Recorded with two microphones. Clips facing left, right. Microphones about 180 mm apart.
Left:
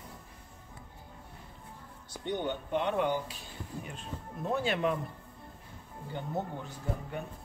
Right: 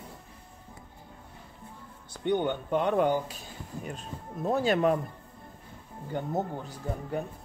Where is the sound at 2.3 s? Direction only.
55° right (ahead or behind).